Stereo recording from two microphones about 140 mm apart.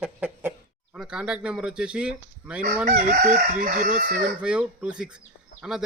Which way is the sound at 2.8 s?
60° right (ahead or behind).